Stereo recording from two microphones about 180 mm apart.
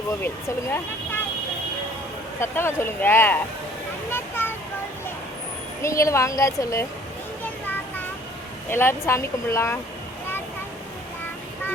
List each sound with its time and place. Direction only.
0.2 s speech: 10° left (ahead or behind)
2.4 s speech: 15° left (ahead or behind)
4.1 s a sound: 10° left (ahead or behind)
5.8 s speech: 15° left (ahead or behind)
7.4 s a sound: 10° left (ahead or behind)
8.7 s speech: 15° left (ahead or behind)